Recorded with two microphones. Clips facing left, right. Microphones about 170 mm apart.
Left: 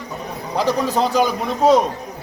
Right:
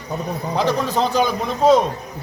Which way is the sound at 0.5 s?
10° left (ahead or behind).